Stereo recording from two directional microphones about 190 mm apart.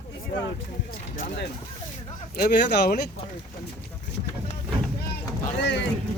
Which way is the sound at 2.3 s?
60° left (ahead or behind).